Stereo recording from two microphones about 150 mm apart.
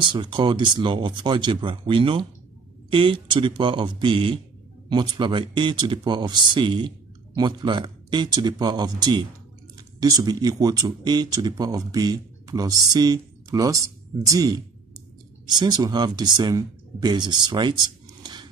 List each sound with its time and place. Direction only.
0.0 s speech: 30° right (ahead or behind)